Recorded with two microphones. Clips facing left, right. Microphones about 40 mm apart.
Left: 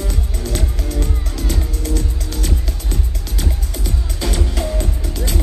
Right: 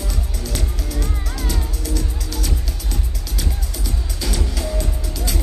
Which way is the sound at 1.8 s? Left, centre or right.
Left.